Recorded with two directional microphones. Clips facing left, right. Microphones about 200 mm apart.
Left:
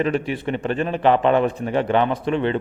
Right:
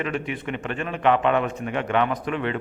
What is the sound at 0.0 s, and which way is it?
A man's voice, 35° left (ahead or behind).